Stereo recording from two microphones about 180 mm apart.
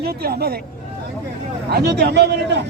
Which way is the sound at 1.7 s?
65° right (ahead or behind).